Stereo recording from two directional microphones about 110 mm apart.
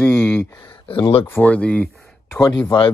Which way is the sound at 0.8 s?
55° left (ahead or behind).